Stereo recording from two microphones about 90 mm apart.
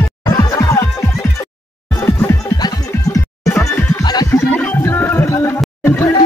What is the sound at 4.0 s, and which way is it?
Music, 50° left (ahead or behind).